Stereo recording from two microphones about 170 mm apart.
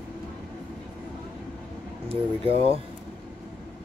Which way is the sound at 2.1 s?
35° right (ahead or behind).